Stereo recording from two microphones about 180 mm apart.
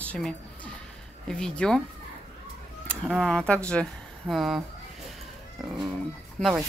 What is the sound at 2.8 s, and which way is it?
Speech, centre (ahead or behind).